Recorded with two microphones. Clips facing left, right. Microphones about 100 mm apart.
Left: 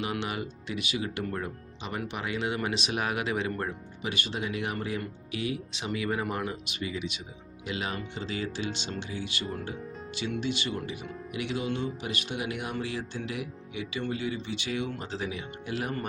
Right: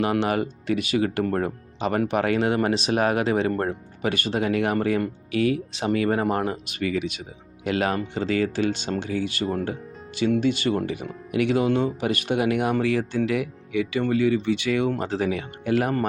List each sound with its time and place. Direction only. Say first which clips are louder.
0.0 s speech: right 10 dB; 50° right (ahead or behind)